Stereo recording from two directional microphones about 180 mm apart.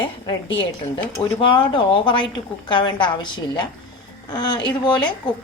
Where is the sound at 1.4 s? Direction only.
30° left (ahead or behind).